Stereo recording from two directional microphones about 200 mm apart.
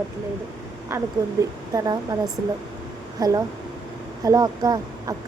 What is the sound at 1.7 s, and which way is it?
A woman's voice, 20° right (ahead or behind).